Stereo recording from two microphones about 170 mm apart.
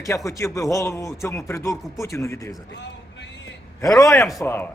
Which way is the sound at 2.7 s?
90° left.